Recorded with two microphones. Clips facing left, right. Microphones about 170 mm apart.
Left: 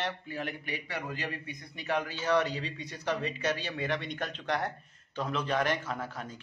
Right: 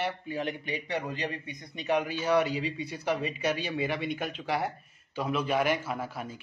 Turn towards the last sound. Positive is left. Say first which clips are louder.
# right 2 dB
turn(degrees=-10)  # may be behind; listen again after turning